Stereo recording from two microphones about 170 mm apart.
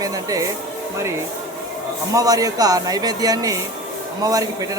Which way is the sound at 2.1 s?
20° right (ahead or behind).